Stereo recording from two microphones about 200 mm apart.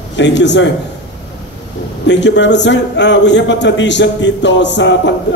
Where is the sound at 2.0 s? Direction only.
60° left (ahead or behind).